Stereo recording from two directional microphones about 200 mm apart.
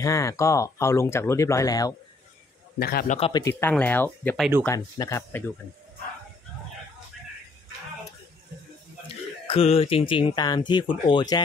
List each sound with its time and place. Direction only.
0.0 s speech: 15° left (ahead or behind)
2.8 s a man's voice: 50° left (ahead or behind)
3.2 s speech: 25° left (ahead or behind)
3.4 s speech: 10° left (ahead or behind)
9.5 s speech: 30° left (ahead or behind)